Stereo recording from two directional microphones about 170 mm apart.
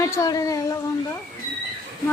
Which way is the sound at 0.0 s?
20° left (ahead or behind).